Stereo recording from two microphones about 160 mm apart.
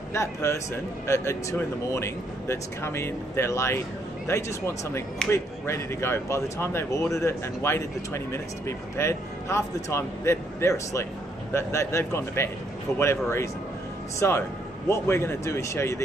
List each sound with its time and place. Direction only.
0.1 s speech: 15° left (ahead or behind)